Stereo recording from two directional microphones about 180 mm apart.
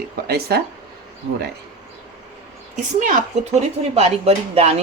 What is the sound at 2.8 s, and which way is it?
A woman's voice, 45° right (ahead or behind).